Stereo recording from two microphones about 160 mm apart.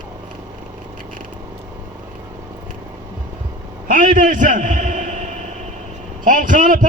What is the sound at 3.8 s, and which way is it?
A man's voice, 55° right (ahead or behind).